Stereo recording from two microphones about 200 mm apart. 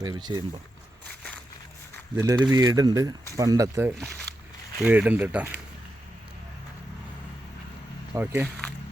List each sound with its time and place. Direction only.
0.0 s speech: 20° right (ahead or behind)
2.1 s speech: 20° right (ahead or behind)
8.1 s speech: 10° right (ahead or behind)